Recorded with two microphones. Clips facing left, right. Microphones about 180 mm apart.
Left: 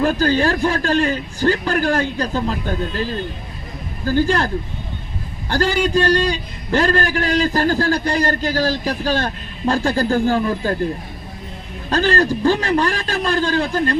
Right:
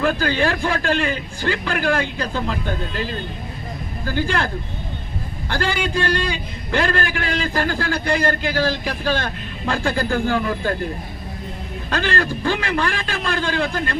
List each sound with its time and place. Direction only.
0.0 s a man's voice: 40° left (ahead or behind)
11.9 s a man's voice: 35° left (ahead or behind)